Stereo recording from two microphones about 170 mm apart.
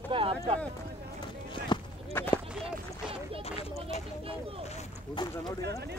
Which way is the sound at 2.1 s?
15° left (ahead or behind).